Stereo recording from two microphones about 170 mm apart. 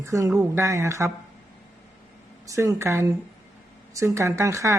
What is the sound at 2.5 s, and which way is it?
Speech, 15° right (ahead or behind).